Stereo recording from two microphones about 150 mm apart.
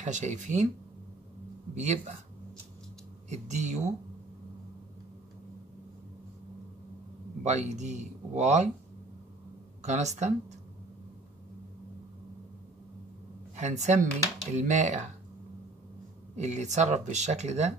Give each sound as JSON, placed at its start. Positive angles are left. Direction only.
{"t": 0.0, "sound": "speech", "side_deg": -55}
{"t": 1.8, "sound": "speech", "side_deg": -50}
{"t": 3.3, "sound": "speech", "side_deg": -50}
{"t": 7.4, "sound": "speech", "side_deg": -50}
{"t": 9.8, "sound": "speech", "side_deg": -50}
{"t": 13.6, "sound": "speech", "side_deg": -50}
{"t": 16.3, "sound": "speech", "side_deg": -50}